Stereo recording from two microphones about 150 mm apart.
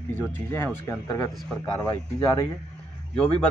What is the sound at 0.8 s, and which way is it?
Speech, 20° left (ahead or behind).